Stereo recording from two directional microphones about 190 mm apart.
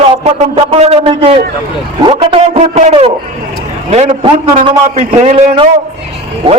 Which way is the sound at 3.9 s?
30° right (ahead or behind).